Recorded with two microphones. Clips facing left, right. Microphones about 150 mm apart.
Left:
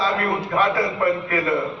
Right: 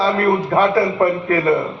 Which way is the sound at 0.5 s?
50° right (ahead or behind).